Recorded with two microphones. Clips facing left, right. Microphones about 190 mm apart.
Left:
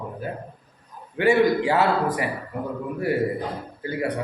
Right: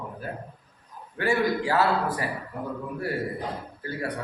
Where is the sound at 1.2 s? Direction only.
20° left (ahead or behind).